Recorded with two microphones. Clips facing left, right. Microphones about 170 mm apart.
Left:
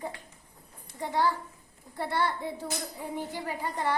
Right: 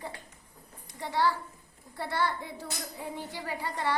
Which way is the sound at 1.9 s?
20° left (ahead or behind).